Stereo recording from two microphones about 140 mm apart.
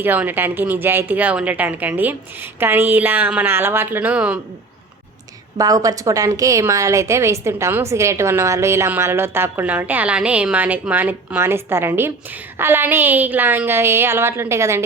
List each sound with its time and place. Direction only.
0.0 s a woman's voice: 15° right (ahead or behind)
5.5 s a woman's voice: 25° right (ahead or behind)